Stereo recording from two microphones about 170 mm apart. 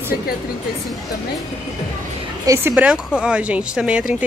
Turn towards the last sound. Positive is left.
turn(degrees=-5)  # may be behind; listen again after turning